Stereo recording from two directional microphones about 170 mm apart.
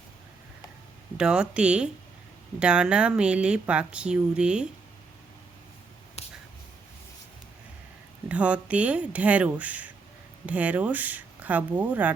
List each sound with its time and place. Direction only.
1.1 s speech: 5° right (ahead or behind)
6.2 s finger snapping: 40° left (ahead or behind)
8.3 s speech: 5° right (ahead or behind)